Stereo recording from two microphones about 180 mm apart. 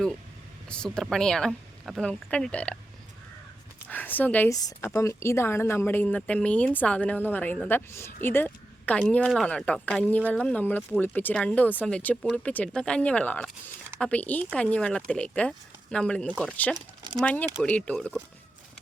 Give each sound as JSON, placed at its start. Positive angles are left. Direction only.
{"t": 0.7, "sound": "speech", "side_deg": 5}
{"t": 3.8, "sound": "speech", "side_deg": 10}
{"t": 16.7, "sound": "a sound", "side_deg": -25}
{"t": 17.2, "sound": "speech", "side_deg": 10}